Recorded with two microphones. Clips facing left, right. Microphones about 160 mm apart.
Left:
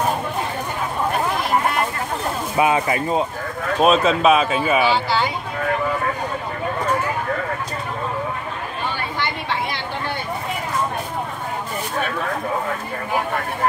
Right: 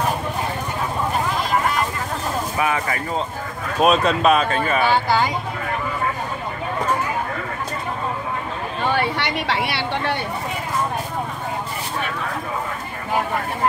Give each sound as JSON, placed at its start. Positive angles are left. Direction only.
{"t": 2.6, "sound": "speech", "side_deg": 20}
{"t": 3.8, "sound": "speech", "side_deg": 0}
{"t": 4.8, "sound": "speech", "side_deg": -50}
{"t": 8.9, "sound": "a sound", "side_deg": -75}